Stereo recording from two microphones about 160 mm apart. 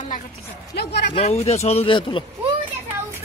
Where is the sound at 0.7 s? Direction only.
90° left.